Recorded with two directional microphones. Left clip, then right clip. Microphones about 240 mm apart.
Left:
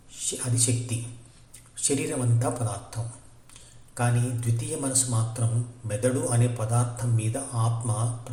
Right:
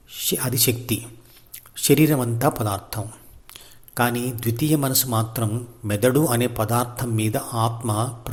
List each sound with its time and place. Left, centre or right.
0.3 s a man's voice: right